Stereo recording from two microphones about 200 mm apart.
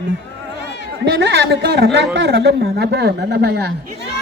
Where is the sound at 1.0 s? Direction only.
60° right (ahead or behind).